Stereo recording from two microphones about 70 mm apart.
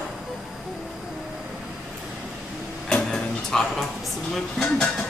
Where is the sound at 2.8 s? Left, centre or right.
Centre.